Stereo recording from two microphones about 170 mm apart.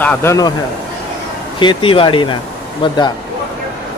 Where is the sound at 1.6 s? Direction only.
30° left (ahead or behind).